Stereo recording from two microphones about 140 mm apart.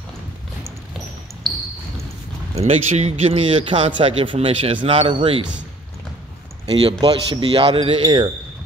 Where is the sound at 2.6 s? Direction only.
50° right (ahead or behind); by 5.4 s 35° right (ahead or behind).